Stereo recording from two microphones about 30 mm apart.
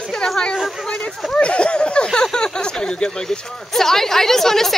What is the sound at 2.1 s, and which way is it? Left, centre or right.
A woman's voice, left.